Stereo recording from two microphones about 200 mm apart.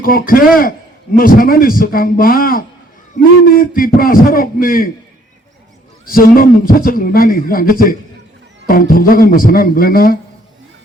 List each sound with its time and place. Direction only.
0.0 s a man's voice: 45° left (ahead or behind)
6.1 s a man's voice: 45° left (ahead or behind)